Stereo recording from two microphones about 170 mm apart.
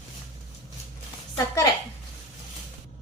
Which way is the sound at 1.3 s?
20° left (ahead or behind).